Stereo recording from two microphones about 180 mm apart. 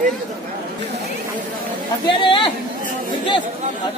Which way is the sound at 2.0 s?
25° left (ahead or behind).